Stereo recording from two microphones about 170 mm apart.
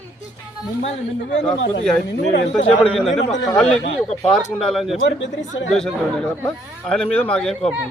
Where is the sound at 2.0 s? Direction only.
90° left.